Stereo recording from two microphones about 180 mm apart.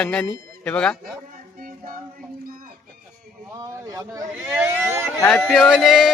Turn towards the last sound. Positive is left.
turn(degrees=0)  # may be behind; listen again after turning